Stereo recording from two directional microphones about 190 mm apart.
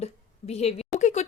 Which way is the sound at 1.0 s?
40° left (ahead or behind).